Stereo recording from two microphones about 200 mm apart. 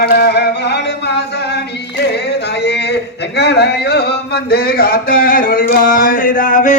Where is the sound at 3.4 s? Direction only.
55° left (ahead or behind).